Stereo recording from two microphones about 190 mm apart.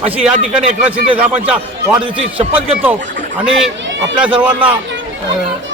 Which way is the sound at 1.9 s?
25° right (ahead or behind).